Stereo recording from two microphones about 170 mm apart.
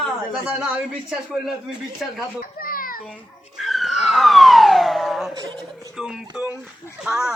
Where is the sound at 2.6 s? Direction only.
55° left (ahead or behind).